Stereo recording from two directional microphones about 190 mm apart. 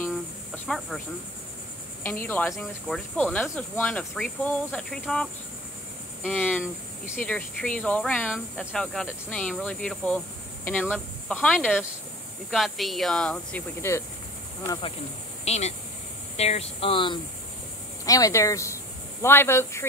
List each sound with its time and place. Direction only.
0.7 s speech: centre (ahead or behind)
2.0 s speech: 10° left (ahead or behind)
6.3 s speech: 10° left (ahead or behind)
14.7 s speech: 25° left (ahead or behind)